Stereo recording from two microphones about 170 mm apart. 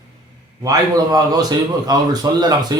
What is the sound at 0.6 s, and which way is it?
A man's voice, 20° right (ahead or behind).